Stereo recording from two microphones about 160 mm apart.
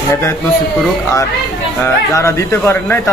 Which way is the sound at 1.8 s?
15° left (ahead or behind).